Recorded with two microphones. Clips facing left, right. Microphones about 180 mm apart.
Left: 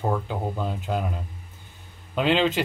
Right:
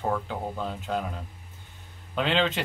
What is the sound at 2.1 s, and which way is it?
Speech, 5° left (ahead or behind).